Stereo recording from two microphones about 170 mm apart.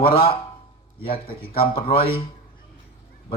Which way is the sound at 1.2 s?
35° left (ahead or behind).